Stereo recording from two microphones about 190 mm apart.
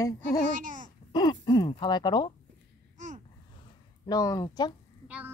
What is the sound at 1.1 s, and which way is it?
Speech, 20° left (ahead or behind).